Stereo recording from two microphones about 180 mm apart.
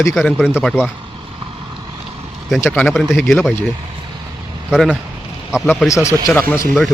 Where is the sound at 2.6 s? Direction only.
10° left (ahead or behind).